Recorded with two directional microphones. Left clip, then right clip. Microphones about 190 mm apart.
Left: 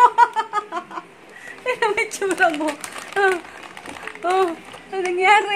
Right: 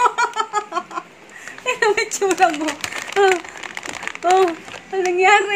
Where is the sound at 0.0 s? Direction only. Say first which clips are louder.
Left 3 dB; centre (ahead or behind).